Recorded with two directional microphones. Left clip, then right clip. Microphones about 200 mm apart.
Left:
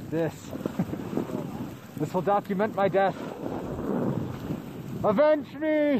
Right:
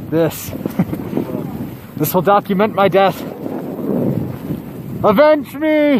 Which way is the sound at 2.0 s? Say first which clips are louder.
Right 12 dB; 30° right (ahead or behind).